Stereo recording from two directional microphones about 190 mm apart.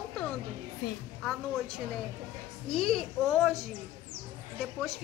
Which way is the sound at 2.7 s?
5° left (ahead or behind).